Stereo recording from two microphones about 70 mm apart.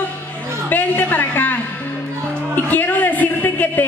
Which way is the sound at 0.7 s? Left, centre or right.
Left.